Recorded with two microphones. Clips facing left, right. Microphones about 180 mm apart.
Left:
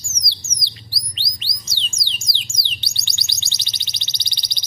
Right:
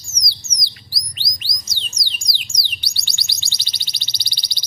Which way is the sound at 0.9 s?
25° left (ahead or behind).